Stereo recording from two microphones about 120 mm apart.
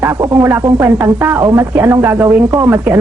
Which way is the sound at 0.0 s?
20° right (ahead or behind).